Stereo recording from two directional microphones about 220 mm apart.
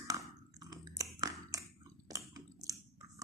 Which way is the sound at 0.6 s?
15° right (ahead or behind).